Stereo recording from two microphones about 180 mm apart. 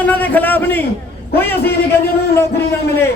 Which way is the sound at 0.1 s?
10° left (ahead or behind).